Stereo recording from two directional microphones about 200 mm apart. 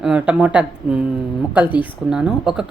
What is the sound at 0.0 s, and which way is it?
A woman's voice, 5° right (ahead or behind).